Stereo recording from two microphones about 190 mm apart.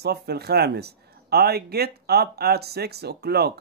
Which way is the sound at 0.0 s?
60° right (ahead or behind).